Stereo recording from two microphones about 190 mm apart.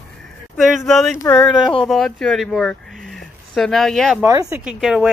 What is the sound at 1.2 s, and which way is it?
Speech, 5° left (ahead or behind).